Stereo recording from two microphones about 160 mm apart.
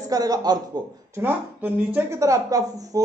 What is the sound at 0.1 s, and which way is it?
Speech, 25° right (ahead or behind).